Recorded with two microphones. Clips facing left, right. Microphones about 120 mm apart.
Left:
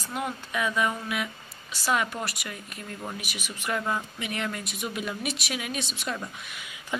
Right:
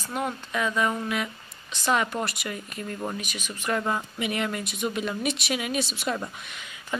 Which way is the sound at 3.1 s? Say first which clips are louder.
Right 3 dB; 10° left (ahead or behind).